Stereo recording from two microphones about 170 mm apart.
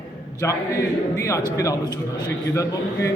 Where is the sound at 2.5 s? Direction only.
15° left (ahead or behind).